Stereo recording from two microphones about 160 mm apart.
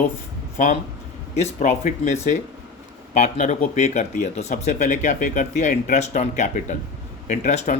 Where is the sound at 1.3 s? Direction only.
45° left (ahead or behind).